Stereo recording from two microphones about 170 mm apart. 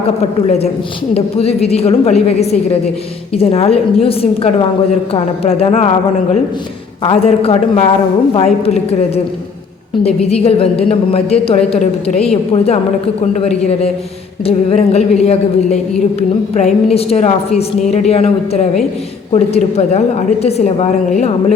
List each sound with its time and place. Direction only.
0.2 s a woman's voice: 40° left (ahead or behind)
7.0 s a woman's voice: 35° left (ahead or behind)